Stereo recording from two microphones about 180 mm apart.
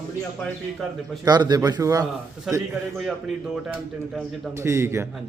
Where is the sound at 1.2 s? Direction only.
20° right (ahead or behind).